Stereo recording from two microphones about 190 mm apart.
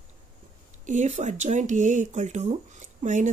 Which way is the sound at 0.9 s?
40° right (ahead or behind).